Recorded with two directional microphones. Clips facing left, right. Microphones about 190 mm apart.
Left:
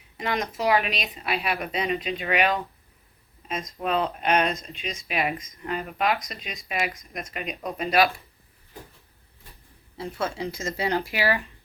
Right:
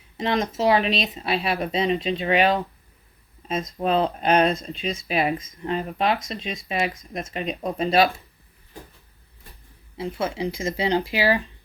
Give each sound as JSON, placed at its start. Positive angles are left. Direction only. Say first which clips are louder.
{"t": 0.2, "sound": "speech", "louder": "right 4 dB", "side_deg": -30}
{"t": 10.3, "sound": "speech", "louder": "right 4 dB", "side_deg": -15}